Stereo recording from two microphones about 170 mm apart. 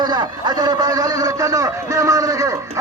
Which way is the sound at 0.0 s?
25° right (ahead or behind).